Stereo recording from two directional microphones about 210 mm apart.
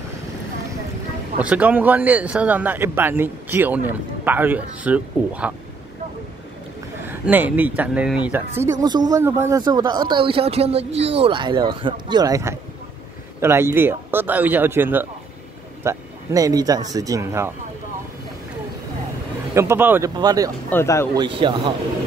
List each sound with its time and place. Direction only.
1.4 s speech: 5° right (ahead or behind)
7.1 s speech: 10° right (ahead or behind)
8.8 s speech: 20° right (ahead or behind)
19.5 s speech: 10° right (ahead or behind)
20.7 s speech: 10° left (ahead or behind)
21.1 s speech: 20° right (ahead or behind)